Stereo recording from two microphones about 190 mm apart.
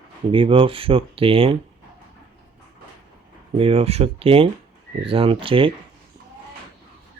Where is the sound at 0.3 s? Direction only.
25° right (ahead or behind).